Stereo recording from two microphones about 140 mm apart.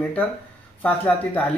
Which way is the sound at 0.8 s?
10° left (ahead or behind).